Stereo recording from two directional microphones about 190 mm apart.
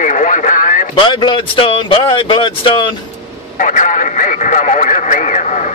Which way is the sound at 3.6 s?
45° left (ahead or behind).